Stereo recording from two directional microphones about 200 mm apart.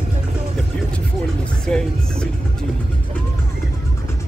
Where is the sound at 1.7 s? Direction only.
5° left (ahead or behind).